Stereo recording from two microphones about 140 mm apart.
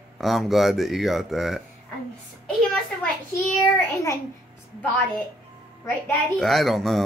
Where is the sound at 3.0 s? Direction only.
10° left (ahead or behind).